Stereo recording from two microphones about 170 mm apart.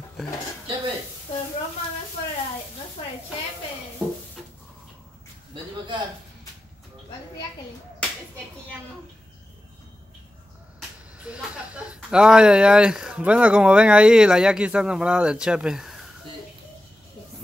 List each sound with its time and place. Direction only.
5.5 s a man's voice: 30° right (ahead or behind)
11.1 s speech: 5° right (ahead or behind)